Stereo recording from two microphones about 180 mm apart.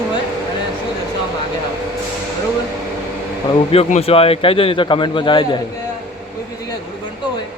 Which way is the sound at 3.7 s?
35° left (ahead or behind).